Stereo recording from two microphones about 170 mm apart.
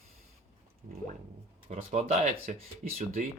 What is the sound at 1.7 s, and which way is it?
Speech, 40° right (ahead or behind).